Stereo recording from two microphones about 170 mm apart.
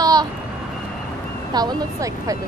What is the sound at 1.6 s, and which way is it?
Speech, 20° right (ahead or behind).